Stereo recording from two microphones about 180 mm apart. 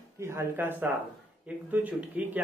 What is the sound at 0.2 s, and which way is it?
Speech, 15° right (ahead or behind).